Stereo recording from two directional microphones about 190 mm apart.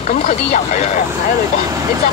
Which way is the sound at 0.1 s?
45° left (ahead or behind).